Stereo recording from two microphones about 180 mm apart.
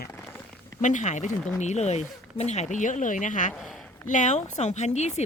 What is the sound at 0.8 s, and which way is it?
Speech, 45° left (ahead or behind).